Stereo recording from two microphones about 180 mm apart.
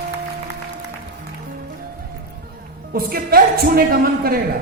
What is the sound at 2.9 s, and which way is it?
A man's voice, 55° right (ahead or behind).